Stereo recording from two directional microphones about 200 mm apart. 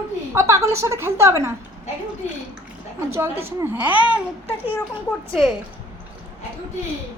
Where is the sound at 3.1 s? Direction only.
10° right (ahead or behind).